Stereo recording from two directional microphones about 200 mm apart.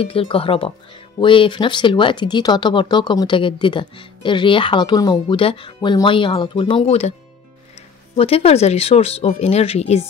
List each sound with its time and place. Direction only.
0.0 s speech: 30° left (ahead or behind)
8.2 s speech: 30° left (ahead or behind)